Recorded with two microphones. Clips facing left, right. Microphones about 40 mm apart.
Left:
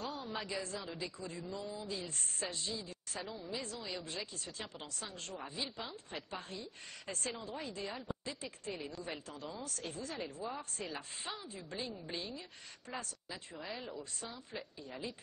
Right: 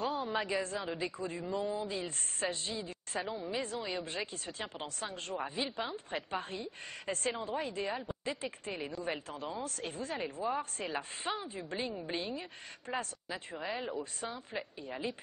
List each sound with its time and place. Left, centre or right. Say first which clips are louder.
0.0 s a woman's voice: right 7 dB; right